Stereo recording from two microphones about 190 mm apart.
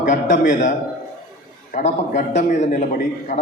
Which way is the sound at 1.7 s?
35° left (ahead or behind).